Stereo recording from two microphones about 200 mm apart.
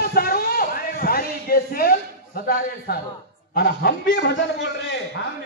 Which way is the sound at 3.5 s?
50° left (ahead or behind).